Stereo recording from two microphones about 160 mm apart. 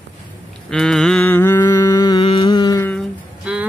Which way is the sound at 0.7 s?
5° left (ahead or behind).